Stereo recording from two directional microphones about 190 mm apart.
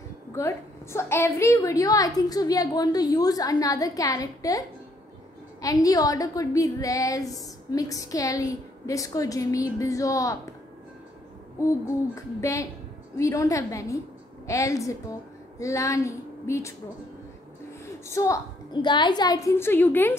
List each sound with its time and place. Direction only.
0.4 s a woman's voice: 15° left (ahead or behind)
12.2 s a woman's voice: 15° left (ahead or behind)
18.0 s a woman's voice: 15° left (ahead or behind)